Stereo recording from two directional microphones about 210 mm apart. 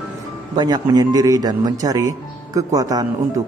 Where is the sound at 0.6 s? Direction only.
20° right (ahead or behind).